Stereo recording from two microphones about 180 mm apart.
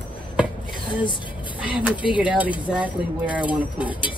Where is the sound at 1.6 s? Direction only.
5° right (ahead or behind).